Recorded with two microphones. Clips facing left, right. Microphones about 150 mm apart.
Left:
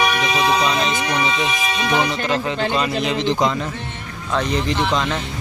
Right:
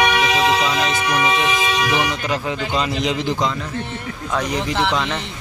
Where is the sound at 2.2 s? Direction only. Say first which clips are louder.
Left 2 dB; 10° right (ahead or behind).